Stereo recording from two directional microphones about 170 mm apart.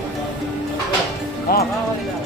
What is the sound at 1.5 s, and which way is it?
Music, 65° left (ahead or behind).